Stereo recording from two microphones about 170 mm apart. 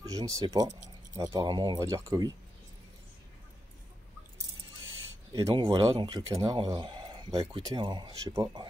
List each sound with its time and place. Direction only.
0.0 s speech: 20° right (ahead or behind)
5.3 s speech: 20° right (ahead or behind)